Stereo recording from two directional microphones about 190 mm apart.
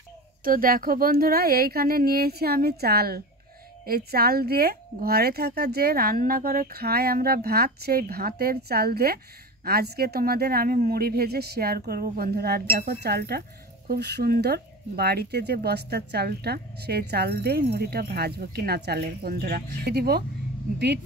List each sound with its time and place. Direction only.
0.4 s speech: 50° right (ahead or behind)